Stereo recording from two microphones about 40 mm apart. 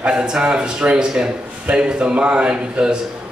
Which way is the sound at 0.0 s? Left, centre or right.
Right.